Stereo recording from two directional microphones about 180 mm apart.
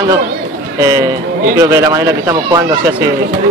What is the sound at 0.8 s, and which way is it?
Speech, 15° right (ahead or behind).